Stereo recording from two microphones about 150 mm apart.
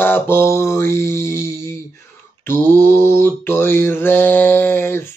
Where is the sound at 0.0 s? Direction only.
15° left (ahead or behind).